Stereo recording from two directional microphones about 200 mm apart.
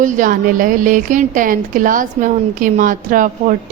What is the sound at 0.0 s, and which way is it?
A woman's voice, 40° right (ahead or behind).